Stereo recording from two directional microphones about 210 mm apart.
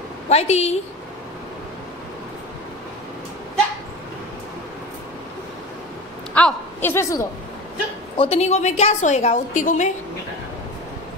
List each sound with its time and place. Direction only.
0.3 s a woman's voice: 30° left (ahead or behind)
6.3 s a woman's voice: 10° left (ahead or behind)
8.2 s a woman's voice: 30° left (ahead or behind)